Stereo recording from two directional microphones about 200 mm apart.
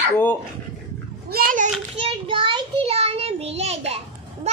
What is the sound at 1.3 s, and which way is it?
Speech, 45° right (ahead or behind).